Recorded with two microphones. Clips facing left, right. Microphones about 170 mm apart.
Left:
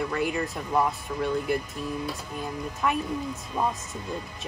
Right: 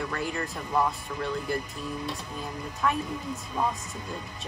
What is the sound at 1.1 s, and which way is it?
Speech, 10° left (ahead or behind).